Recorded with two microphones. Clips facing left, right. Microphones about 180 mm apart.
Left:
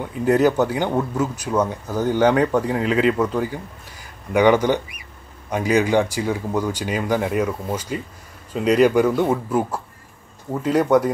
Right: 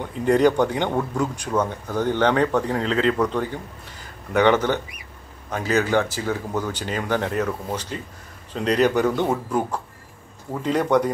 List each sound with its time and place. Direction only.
0.0 s speech: 5° left (ahead or behind)